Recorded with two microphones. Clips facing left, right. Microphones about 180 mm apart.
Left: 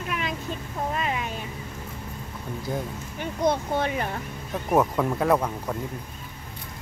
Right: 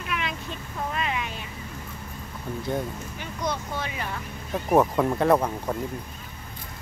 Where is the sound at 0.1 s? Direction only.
40° left (ahead or behind).